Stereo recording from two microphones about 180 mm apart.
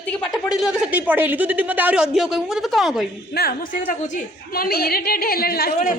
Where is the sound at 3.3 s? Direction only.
55° left (ahead or behind).